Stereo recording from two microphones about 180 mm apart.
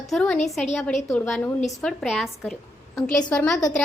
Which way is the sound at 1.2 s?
5° left (ahead or behind).